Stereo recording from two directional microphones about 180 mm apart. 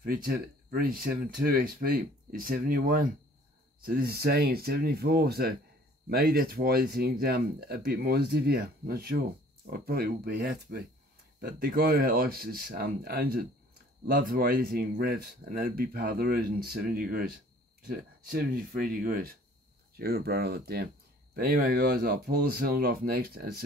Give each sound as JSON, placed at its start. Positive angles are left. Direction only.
{"t": 0.0, "sound": "speech", "side_deg": -55}
{"t": 11.6, "sound": "speech", "side_deg": -55}